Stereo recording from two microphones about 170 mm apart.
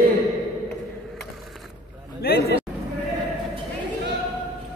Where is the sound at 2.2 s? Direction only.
70° left (ahead or behind).